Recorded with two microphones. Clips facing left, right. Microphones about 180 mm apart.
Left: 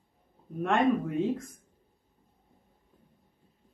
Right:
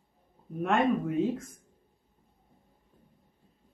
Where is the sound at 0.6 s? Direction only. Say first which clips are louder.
Left 1 dB; 5° right (ahead or behind).